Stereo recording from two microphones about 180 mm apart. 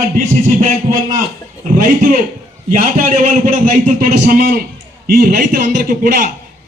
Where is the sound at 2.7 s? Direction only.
50° right (ahead or behind).